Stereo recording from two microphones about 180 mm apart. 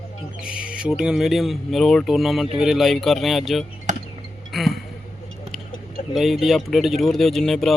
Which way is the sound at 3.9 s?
45° right (ahead or behind).